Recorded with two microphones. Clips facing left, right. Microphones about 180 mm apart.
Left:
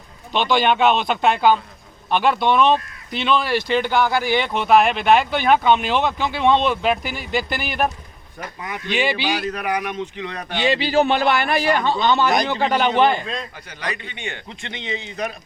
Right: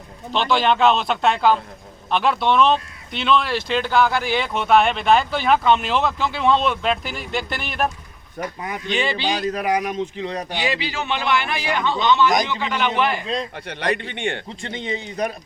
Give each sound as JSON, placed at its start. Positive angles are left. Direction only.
{"t": 0.3, "sound": "speech", "side_deg": 0}
{"t": 8.4, "sound": "a man's voice", "side_deg": -40}
{"t": 8.9, "sound": "speech", "side_deg": 5}
{"t": 9.2, "sound": "a man's voice", "side_deg": -35}
{"t": 10.6, "sound": "a man's voice", "side_deg": 30}
{"t": 13.7, "sound": "a man's voice", "side_deg": -60}